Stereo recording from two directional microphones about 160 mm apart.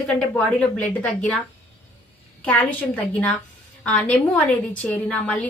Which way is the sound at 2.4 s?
10° left (ahead or behind).